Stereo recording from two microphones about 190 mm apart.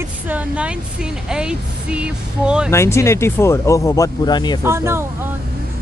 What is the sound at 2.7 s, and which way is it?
Speech, 15° left (ahead or behind).